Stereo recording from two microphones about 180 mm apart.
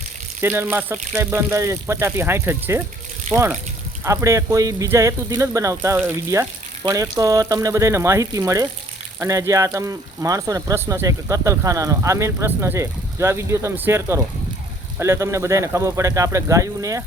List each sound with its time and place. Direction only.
0.4 s speech: 10° right (ahead or behind)
3.3 s speech: 40° right (ahead or behind)
4.0 s speech: 15° right (ahead or behind)